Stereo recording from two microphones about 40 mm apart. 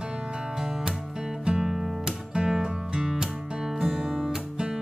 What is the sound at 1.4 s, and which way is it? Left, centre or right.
Music, right.